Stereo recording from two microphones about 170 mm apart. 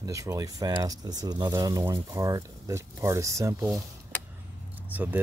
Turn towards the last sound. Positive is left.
turn(degrees=-10)  # may be behind; listen again after turning